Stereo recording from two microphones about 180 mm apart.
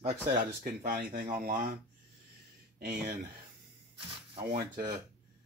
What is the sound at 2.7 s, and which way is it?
Speech, 60° right (ahead or behind).